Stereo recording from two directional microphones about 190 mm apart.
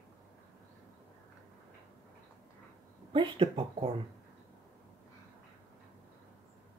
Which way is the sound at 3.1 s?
30° right (ahead or behind).